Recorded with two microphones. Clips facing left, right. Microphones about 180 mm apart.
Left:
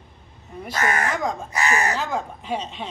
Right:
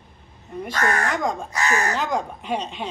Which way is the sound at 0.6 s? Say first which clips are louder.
Right 1 dB; 5° left (ahead or behind).